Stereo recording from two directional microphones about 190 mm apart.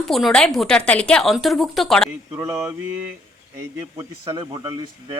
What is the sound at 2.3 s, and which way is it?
Speech, 20° right (ahead or behind).